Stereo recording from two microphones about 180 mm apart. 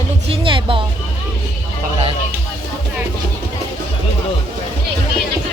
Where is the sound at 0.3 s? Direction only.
30° right (ahead or behind).